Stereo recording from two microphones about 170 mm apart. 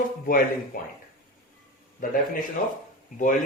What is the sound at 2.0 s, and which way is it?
Speech, 55° left (ahead or behind).